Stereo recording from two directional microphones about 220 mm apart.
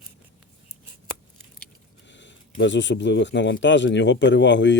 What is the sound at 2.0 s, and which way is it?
Speech, 55° left (ahead or behind).